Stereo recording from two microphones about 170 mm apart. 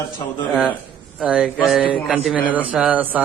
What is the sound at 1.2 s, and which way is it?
A man's voice, 5° right (ahead or behind).